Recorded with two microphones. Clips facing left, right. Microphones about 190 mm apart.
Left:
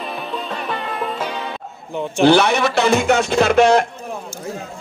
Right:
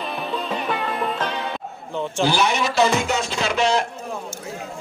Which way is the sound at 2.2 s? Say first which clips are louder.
Left 8 dB; 60° left (ahead or behind).